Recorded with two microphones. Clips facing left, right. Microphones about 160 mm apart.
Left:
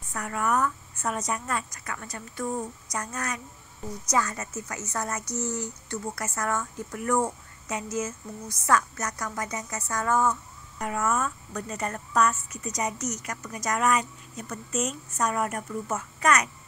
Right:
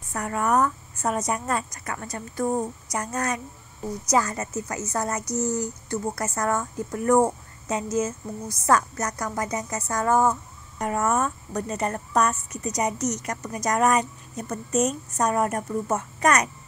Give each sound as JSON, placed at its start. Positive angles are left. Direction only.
{"t": 0.1, "sound": "speech", "side_deg": -35}
{"t": 11.6, "sound": "speech", "side_deg": -30}